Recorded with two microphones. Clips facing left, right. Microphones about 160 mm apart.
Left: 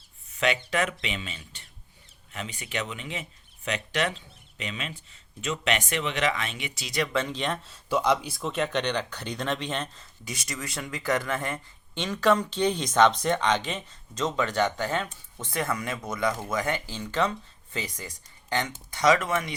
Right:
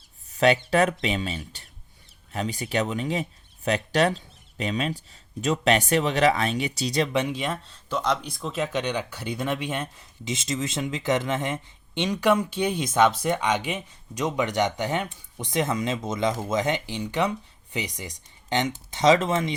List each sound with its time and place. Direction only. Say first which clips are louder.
0.3 s speech: right 6 dB; 35° right (ahead or behind)
7.1 s speech: right 2 dB; 15° right (ahead or behind)